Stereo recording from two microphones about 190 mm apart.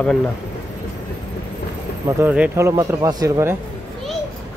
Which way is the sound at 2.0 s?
10° right (ahead or behind).